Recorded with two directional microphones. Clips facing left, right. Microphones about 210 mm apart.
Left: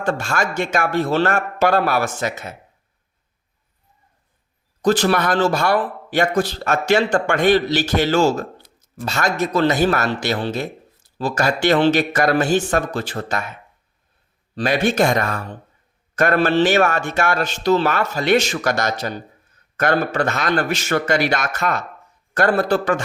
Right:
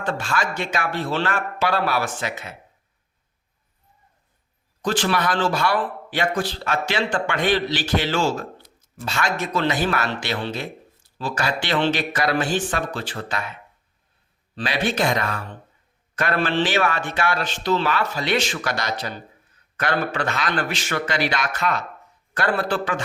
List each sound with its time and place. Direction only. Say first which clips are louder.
0.0 s a man's voice: left 3 dB; 45° left (ahead or behind)
4.8 s a man's voice: left 5 dB; 40° left (ahead or behind)